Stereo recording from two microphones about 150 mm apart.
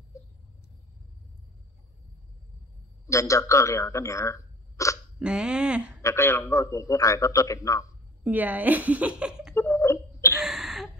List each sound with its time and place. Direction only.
3.1 s speech: 20° left (ahead or behind)
5.2 s speech: 5° right (ahead or behind)
6.0 s a man's voice: 15° left (ahead or behind)
8.2 s a woman's voice: 10° right (ahead or behind)
9.6 s a sound: 15° left (ahead or behind)
10.4 s gasp: centre (ahead or behind)